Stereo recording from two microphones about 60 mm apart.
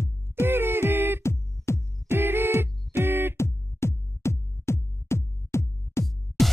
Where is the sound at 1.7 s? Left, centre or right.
Left.